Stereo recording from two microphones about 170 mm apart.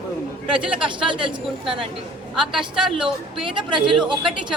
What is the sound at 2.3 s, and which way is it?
A woman's voice, centre (ahead or behind).